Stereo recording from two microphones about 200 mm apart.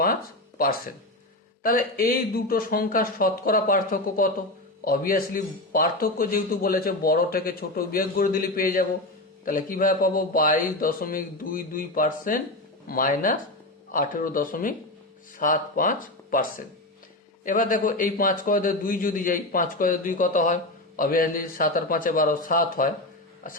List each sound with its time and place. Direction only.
0.6 s speech: 45° left (ahead or behind)